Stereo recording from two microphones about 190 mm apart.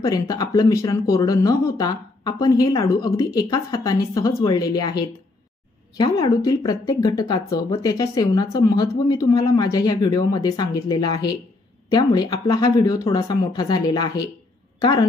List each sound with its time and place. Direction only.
0.0 s a woman's voice: 20° left (ahead or behind)